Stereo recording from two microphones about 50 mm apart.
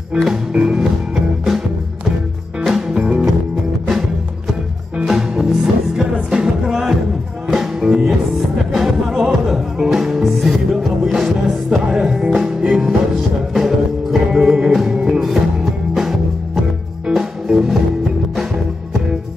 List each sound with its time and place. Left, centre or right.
0.1 s music: centre
2.9 s music: right
5.0 s music: centre